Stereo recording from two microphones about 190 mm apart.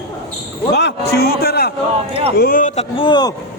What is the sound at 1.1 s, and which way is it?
A man's voice, 55° left (ahead or behind).